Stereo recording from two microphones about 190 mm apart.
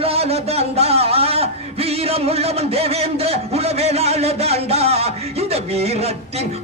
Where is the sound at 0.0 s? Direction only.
30° right (ahead or behind).